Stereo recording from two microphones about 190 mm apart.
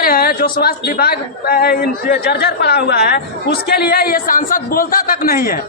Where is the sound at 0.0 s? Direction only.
50° left (ahead or behind).